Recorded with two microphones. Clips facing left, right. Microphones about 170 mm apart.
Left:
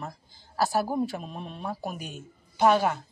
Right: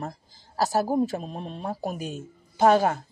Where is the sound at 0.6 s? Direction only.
40° right (ahead or behind).